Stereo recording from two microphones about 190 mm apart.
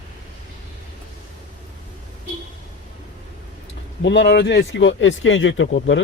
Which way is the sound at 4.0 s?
65° left (ahead or behind).